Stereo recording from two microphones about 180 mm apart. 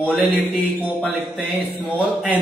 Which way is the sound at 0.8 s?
10° right (ahead or behind).